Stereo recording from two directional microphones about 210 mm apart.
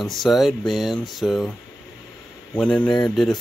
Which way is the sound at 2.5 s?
5° left (ahead or behind).